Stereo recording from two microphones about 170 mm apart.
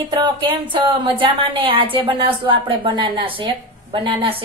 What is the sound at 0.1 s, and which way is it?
A woman's voice, 30° right (ahead or behind).